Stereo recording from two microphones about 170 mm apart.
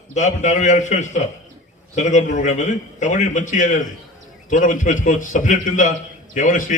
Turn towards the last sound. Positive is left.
turn(degrees=50)  # may be behind; listen again after turning